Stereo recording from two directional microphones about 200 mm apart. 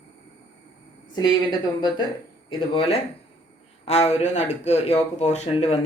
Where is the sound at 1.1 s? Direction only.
20° left (ahead or behind).